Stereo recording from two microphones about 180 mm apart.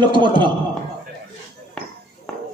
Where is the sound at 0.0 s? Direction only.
25° right (ahead or behind).